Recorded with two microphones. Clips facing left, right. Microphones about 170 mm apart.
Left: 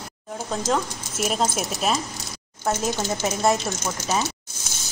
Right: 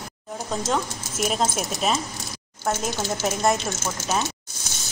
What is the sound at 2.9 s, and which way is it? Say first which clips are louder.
Speech: left 1 dB; 15° left (ahead or behind).